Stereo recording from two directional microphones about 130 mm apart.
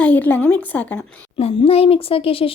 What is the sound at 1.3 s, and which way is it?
A child's voice, 45° left (ahead or behind).